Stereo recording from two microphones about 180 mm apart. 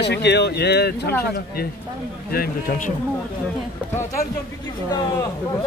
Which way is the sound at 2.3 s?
55° left (ahead or behind).